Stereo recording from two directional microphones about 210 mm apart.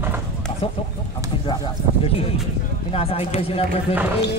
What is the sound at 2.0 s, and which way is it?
Speech, 25° left (ahead or behind).